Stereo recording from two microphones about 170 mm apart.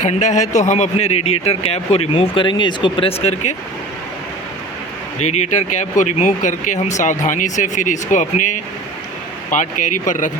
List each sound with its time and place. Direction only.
0.0 s speech: 45° left (ahead or behind)
5.2 s speech: 40° left (ahead or behind)